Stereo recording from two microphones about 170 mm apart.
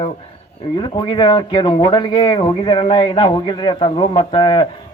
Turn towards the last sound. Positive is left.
turn(degrees=30)  # may be behind; listen again after turning